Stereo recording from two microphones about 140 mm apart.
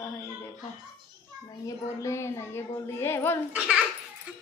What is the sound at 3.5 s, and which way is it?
Speech, 5° right (ahead or behind).